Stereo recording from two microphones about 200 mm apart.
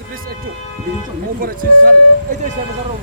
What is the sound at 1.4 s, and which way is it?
Speech, 45° right (ahead or behind).